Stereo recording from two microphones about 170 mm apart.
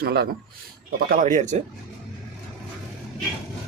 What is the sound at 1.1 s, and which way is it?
Speech, 50° right (ahead or behind).